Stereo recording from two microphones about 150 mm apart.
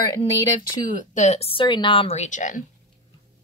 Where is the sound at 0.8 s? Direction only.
55° left (ahead or behind).